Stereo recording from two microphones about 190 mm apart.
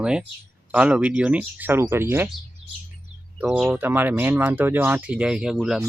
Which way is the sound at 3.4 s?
5° right (ahead or behind).